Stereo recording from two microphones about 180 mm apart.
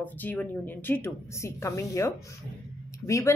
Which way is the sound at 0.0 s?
10° left (ahead or behind).